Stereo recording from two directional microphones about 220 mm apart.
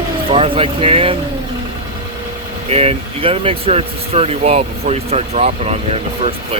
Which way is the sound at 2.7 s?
25° right (ahead or behind).